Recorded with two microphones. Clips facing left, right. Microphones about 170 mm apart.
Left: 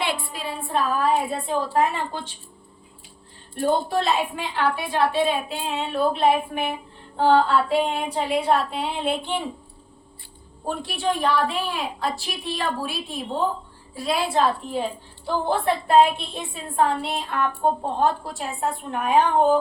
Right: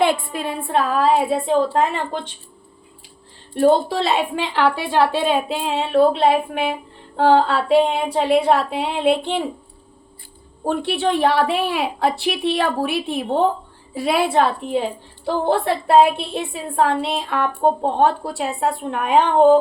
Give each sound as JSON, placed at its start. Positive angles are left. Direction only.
{"t": 0.0, "sound": "a woman's voice", "side_deg": -50}
{"t": 3.5, "sound": "a woman's voice", "side_deg": -80}
{"t": 10.7, "sound": "a woman's voice", "side_deg": -70}
{"t": 16.8, "sound": "a woman's voice", "side_deg": -85}